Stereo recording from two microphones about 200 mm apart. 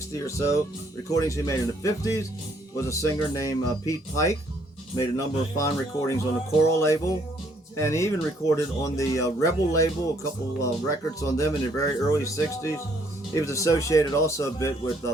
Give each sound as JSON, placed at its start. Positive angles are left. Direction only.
{"t": 0.3, "sound": "speech", "side_deg": 15}